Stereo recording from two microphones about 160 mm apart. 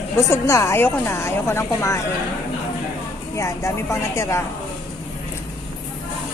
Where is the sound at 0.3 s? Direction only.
20° left (ahead or behind).